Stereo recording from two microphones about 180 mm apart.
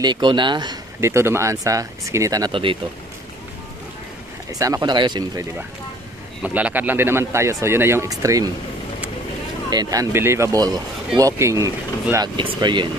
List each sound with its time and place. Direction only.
0.0 s speech: 25° right (ahead or behind)
4.5 s speech: 20° right (ahead or behind)
6.4 s speech: 10° right (ahead or behind)
9.7 s speech: 20° right (ahead or behind)